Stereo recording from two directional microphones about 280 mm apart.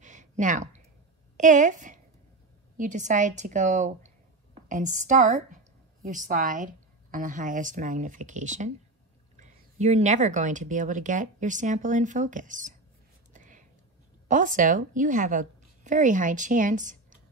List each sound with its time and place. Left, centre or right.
0.0 s a sound: right
1.3 s a woman's voice: right
13.3 s whispering: right
14.2 s a woman's voice: right